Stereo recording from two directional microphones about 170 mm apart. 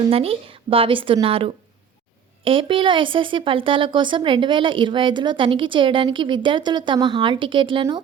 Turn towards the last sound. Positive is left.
turn(degrees=-30)  # may be behind; listen again after turning